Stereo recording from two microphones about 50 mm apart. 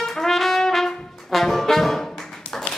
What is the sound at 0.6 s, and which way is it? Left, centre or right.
Brass instrument, centre.